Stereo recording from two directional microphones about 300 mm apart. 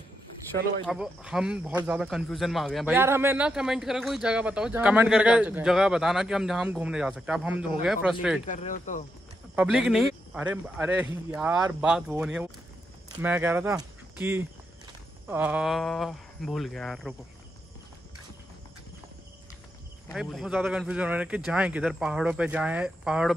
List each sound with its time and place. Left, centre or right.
0.5 s speech: centre
8.5 s speech: left
9.6 s speech: centre
20.1 s speech: centre